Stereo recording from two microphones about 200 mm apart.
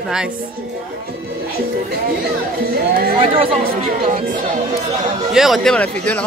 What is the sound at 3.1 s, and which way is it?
Speech, 30° right (ahead or behind).